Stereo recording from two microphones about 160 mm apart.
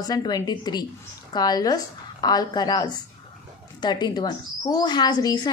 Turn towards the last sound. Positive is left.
turn(degrees=25)  # may be behind; listen again after turning